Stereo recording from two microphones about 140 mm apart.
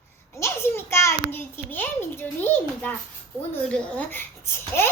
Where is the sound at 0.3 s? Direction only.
20° left (ahead or behind).